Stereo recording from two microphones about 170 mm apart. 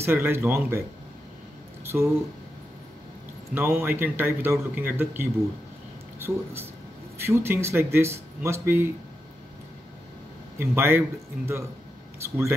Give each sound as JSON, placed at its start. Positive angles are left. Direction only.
{"t": 0.0, "sound": "a man's voice", "side_deg": -15}
{"t": 3.5, "sound": "a man's voice", "side_deg": -10}
{"t": 10.6, "sound": "a man's voice", "side_deg": -15}